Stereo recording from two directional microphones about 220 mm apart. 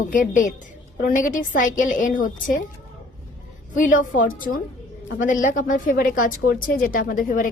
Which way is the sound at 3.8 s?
35° left (ahead or behind).